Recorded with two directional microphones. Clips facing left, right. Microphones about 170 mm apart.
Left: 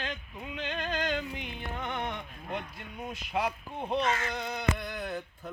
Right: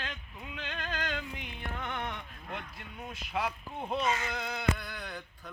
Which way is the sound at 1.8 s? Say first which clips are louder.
Left 3 dB; 20° left (ahead or behind).